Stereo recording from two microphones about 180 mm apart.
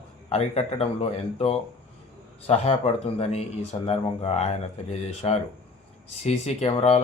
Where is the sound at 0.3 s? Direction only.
35° left (ahead or behind).